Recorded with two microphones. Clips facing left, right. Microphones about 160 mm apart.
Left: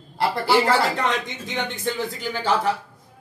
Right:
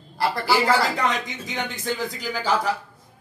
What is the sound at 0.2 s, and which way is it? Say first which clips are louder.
Speech: left 2 dB; 30° left (ahead or behind).